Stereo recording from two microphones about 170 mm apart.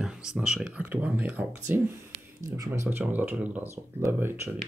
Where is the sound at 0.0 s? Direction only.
5° right (ahead or behind).